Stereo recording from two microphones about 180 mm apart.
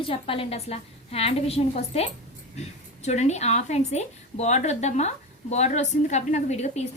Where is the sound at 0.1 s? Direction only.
30° left (ahead or behind).